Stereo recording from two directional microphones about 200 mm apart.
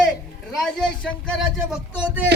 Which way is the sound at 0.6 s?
5° left (ahead or behind).